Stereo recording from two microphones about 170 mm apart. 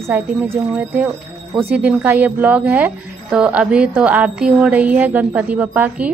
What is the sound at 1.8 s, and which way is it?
A woman's voice, 10° right (ahead or behind).